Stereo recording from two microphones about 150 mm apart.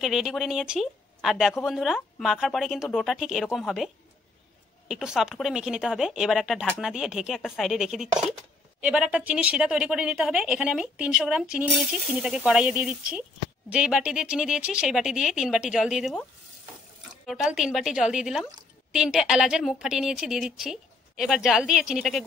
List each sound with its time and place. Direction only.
0.0 s a woman's voice: 5° right (ahead or behind)
17.3 s a woman's voice: centre (ahead or behind)